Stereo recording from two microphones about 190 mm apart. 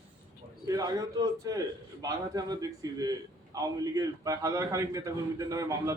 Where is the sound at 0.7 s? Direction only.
20° right (ahead or behind).